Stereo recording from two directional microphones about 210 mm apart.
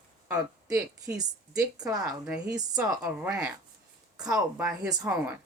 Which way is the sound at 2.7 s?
10° right (ahead or behind).